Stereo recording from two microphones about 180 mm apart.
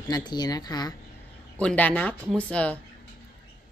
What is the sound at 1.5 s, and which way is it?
Speech, 10° left (ahead or behind).